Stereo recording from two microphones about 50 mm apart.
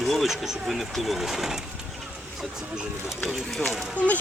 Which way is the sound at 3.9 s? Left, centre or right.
Left.